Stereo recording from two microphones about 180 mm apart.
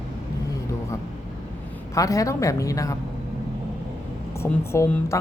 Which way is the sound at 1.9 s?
20° left (ahead or behind).